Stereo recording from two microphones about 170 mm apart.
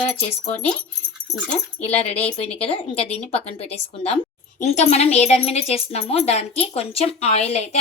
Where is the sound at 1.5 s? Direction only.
40° left (ahead or behind).